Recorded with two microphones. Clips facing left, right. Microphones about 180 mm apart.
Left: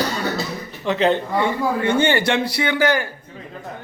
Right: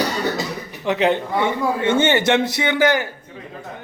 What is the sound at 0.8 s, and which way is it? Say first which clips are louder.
A man's voice: even; 15° right (ahead or behind).